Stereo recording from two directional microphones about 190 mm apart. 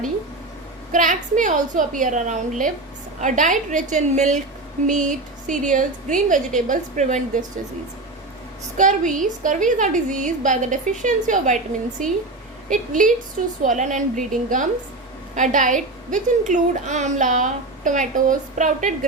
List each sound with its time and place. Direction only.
0.9 s a woman's voice: 40° right (ahead or behind)
8.8 s a woman's voice: 40° right (ahead or behind)